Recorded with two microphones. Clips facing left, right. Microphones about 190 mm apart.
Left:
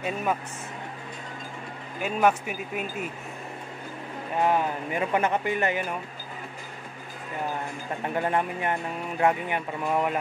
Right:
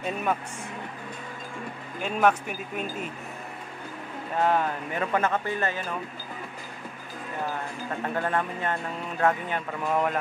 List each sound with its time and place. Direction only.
0.0 s speech: 5° left (ahead or behind)
2.0 s speech: 5° left (ahead or behind)
4.4 s speech: 15° left (ahead or behind)
8.0 s speech: 15° left (ahead or behind)